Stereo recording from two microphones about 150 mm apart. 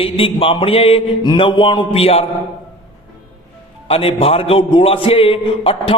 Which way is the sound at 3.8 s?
40° left (ahead or behind).